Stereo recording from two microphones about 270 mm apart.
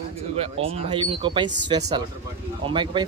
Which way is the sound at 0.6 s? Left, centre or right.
Right.